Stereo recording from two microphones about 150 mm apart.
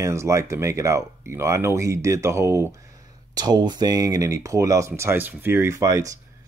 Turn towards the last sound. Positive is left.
turn(degrees=-20)  # may be behind; listen again after turning